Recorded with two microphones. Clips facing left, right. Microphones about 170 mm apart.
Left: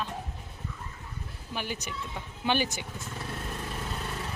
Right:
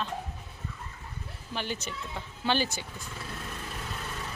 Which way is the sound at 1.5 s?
10° left (ahead or behind).